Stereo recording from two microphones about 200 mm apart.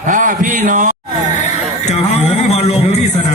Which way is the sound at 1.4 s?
35° left (ahead or behind).